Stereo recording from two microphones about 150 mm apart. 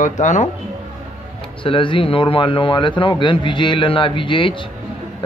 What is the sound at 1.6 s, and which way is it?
Speech, 35° left (ahead or behind).